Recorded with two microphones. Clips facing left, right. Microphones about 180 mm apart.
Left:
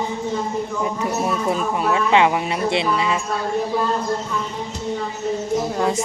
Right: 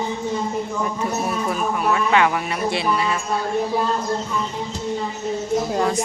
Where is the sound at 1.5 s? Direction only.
25° left (ahead or behind).